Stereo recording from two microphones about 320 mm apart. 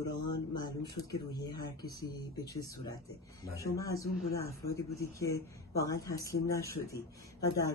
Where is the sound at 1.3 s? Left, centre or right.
Centre.